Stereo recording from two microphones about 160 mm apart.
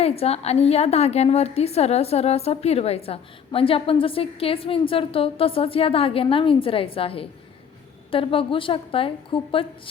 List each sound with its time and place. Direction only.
0.0 s a woman's voice: 40° left (ahead or behind)